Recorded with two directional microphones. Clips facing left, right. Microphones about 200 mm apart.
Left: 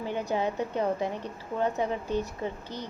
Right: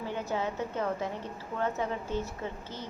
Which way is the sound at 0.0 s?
15° left (ahead or behind).